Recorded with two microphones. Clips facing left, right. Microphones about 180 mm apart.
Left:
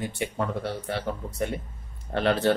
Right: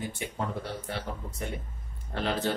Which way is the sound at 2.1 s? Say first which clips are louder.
Left 7 dB; 65° left (ahead or behind).